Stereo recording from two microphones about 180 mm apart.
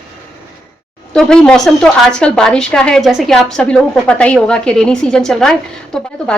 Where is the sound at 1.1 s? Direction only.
5° left (ahead or behind).